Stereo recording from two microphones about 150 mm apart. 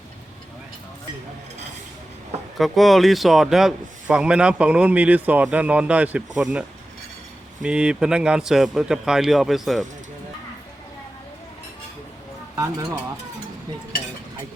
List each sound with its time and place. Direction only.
2.6 s a man's voice: centre (ahead or behind)
12.5 s speech: 20° right (ahead or behind)